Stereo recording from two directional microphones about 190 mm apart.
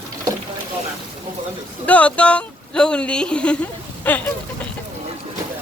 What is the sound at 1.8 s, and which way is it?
A woman's voice, 5° left (ahead or behind).